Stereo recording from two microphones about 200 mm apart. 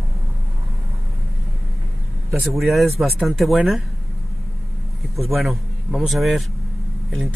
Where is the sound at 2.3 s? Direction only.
Centre (ahead or behind).